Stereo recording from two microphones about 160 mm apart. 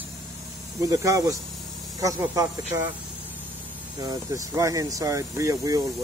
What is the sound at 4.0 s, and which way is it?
Speech, 20° right (ahead or behind).